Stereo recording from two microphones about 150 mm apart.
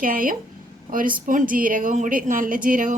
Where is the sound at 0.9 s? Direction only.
65° right (ahead or behind).